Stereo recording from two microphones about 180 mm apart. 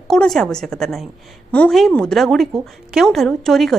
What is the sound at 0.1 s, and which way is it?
A woman's voice, centre (ahead or behind).